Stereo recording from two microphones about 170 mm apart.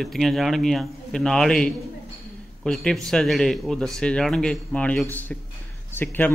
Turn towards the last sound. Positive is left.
turn(degrees=10)  # may be behind; listen again after turning